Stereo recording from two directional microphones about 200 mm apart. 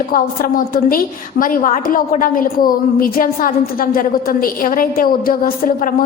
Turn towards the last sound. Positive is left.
turn(degrees=45)  # may be behind; listen again after turning